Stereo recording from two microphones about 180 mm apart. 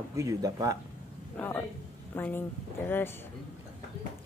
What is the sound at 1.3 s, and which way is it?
A man's voice, 10° left (ahead or behind).